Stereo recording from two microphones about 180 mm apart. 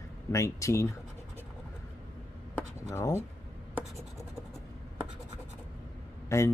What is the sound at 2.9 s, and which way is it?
Speech, 15° left (ahead or behind).